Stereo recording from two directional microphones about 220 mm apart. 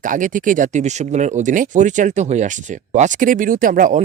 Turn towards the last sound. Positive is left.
turn(degrees=-35)  # may be behind; listen again after turning